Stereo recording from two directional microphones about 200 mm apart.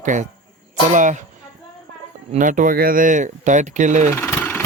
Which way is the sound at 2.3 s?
40° right (ahead or behind).